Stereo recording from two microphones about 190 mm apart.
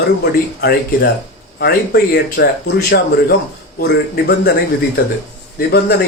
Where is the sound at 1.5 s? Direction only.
55° left (ahead or behind).